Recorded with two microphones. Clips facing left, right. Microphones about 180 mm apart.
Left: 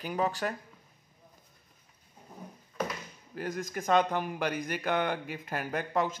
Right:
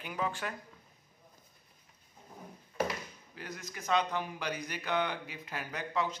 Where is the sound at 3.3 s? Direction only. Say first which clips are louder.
Left 11 dB; 50° left (ahead or behind).